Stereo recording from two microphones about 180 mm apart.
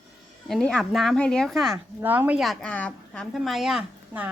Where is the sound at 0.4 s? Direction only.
5° left (ahead or behind).